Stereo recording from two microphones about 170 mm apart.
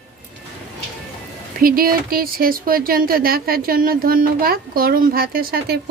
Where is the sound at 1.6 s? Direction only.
60° right (ahead or behind).